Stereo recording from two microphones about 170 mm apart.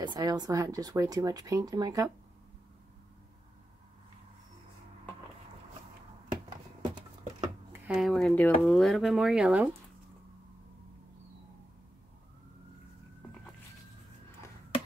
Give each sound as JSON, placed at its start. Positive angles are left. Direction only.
{"t": 0.0, "sound": "speech", "side_deg": -25}
{"t": 7.7, "sound": "speech", "side_deg": -5}